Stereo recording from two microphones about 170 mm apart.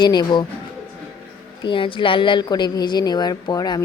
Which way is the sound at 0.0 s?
25° left (ahead or behind).